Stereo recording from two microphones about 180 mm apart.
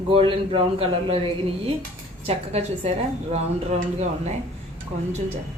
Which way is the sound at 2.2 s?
35° right (ahead or behind).